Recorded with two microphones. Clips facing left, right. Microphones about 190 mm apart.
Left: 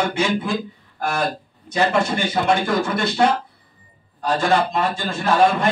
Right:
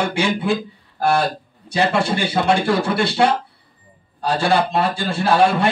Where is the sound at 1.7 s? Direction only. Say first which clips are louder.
Right 1 dB; 30° right (ahead or behind).